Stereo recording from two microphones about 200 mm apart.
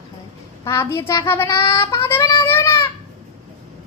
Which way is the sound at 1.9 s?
15° left (ahead or behind).